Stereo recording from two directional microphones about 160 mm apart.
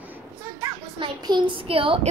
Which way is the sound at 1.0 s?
30° right (ahead or behind).